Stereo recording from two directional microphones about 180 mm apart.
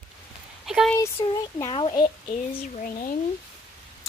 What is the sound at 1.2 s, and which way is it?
Speech, 25° left (ahead or behind).